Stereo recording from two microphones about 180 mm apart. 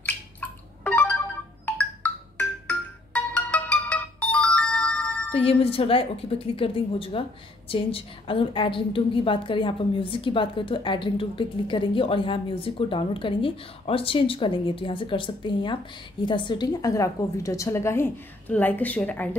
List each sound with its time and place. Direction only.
0.0 s music: 10° left (ahead or behind)
5.3 s a woman's voice: 30° left (ahead or behind); by 19.3 s 10° left (ahead or behind)